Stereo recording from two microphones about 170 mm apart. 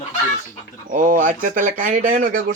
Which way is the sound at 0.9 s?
50° right (ahead or behind).